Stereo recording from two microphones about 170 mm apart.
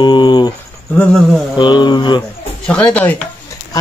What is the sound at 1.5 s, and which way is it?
Speech, 25° left (ahead or behind).